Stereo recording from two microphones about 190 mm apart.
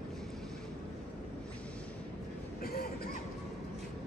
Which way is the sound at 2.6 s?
55° left (ahead or behind).